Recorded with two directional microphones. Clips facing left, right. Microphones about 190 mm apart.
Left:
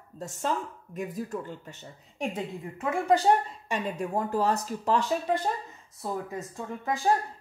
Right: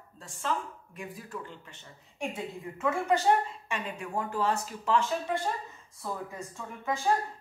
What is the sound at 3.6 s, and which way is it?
Speech, 40° left (ahead or behind).